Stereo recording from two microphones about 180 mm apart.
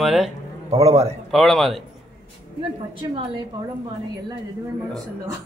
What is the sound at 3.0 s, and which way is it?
Speech, 25° right (ahead or behind).